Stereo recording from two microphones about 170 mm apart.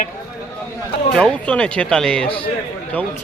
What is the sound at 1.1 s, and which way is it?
Speech, 5° left (ahead or behind).